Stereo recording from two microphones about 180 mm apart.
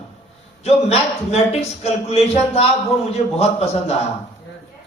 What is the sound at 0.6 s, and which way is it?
A man's voice, 35° left (ahead or behind).